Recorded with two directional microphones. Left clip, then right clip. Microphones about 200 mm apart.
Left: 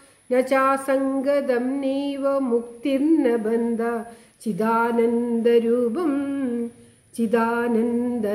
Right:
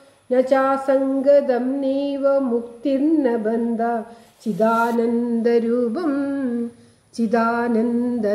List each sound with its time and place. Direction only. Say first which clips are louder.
0.3 s female singing: right 2 dB; 20° left (ahead or behind)